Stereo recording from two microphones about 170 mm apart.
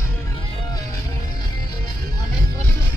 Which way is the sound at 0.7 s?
20° left (ahead or behind).